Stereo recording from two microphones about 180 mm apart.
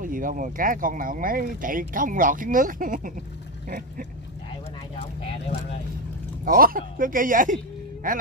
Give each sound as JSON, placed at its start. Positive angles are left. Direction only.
{"t": 0.0, "sound": "speech", "side_deg": -50}
{"t": 5.2, "sound": "a sound", "side_deg": 30}
{"t": 6.4, "sound": "speech", "side_deg": -55}